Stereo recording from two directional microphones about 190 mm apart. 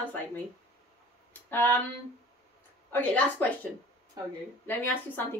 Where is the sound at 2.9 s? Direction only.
10° left (ahead or behind).